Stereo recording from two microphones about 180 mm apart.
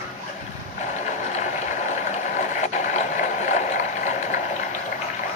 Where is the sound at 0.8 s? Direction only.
40° left (ahead or behind).